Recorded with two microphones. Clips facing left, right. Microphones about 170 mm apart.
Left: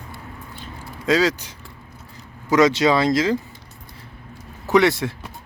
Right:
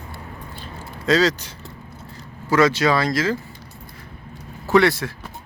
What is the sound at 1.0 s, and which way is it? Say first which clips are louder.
Speech: right 1 dB; 10° left (ahead or behind).